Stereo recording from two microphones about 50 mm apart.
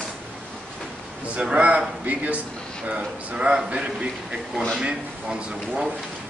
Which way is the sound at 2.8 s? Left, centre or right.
Right.